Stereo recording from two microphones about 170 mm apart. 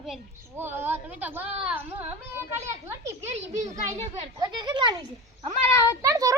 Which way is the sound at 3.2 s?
40° right (ahead or behind).